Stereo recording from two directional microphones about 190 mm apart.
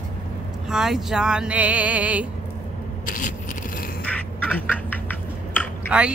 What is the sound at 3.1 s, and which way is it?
Scrape, 45° left (ahead or behind).